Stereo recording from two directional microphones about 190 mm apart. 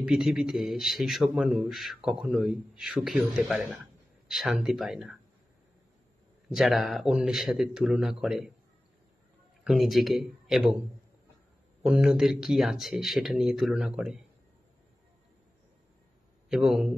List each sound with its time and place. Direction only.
0.0 s a man's voice: 5° right (ahead or behind)
6.5 s a man's voice: centre (ahead or behind)
9.7 s a man's voice: centre (ahead or behind)
11.8 s a man's voice: 5° right (ahead or behind)
16.4 s a man's voice: centre (ahead or behind)